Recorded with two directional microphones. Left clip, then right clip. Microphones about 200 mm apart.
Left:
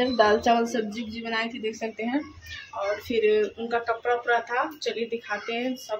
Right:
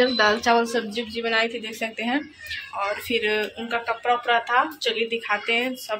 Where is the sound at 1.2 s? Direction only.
15° right (ahead or behind).